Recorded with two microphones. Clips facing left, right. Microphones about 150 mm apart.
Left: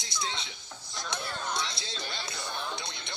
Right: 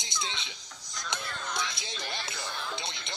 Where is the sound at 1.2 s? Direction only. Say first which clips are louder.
Left 2 dB; 30° left (ahead or behind).